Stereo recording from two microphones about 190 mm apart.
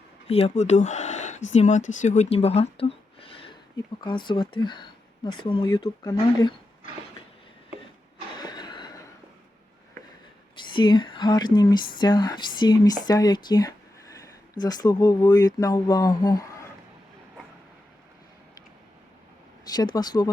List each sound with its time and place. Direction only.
0.3 s speech: 30° left (ahead or behind)
8.4 s a sound: 20° left (ahead or behind)
10.6 s speech: 25° left (ahead or behind)
19.7 s speech: 20° left (ahead or behind)